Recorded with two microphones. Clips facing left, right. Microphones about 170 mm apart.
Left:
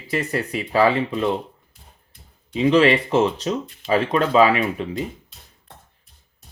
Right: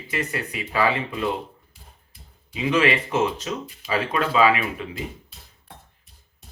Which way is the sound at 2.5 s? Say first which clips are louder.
Left 5 dB; 35° left (ahead or behind).